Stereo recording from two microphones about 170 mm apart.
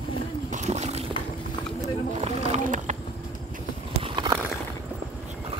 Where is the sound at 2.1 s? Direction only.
45° right (ahead or behind).